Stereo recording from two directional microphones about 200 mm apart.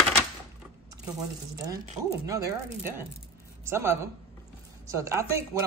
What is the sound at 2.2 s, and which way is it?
Speech, 15° right (ahead or behind).